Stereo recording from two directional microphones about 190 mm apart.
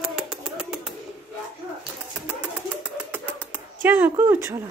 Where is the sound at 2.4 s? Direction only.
5° right (ahead or behind).